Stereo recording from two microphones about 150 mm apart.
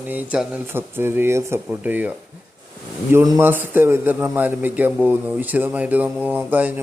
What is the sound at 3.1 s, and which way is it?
Speech, 25° right (ahead or behind).